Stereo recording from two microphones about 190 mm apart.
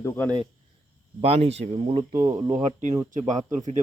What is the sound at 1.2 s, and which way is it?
Speech, 35° right (ahead or behind).